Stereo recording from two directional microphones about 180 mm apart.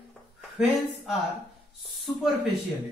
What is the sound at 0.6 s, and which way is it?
Speech, centre (ahead or behind).